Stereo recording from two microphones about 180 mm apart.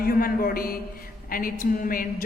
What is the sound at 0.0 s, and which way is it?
A man's voice, 55° left (ahead or behind).